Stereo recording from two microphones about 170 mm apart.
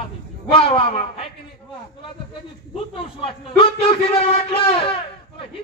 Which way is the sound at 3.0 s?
30° left (ahead or behind).